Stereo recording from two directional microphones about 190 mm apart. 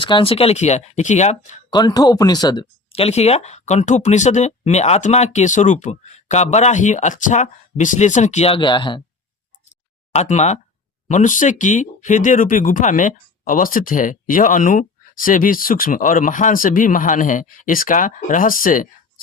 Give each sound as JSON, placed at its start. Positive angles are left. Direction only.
{"t": 0.0, "sound": "speech", "side_deg": 25}
{"t": 1.7, "sound": "speech", "side_deg": 20}
{"t": 10.1, "sound": "speech", "side_deg": 35}